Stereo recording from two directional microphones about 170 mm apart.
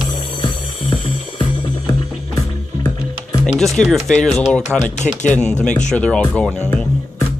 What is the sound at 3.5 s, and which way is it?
Speech, centre (ahead or behind).